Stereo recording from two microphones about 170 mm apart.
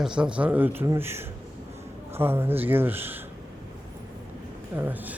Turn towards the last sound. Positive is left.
turn(degrees=-10)  # may be behind; listen again after turning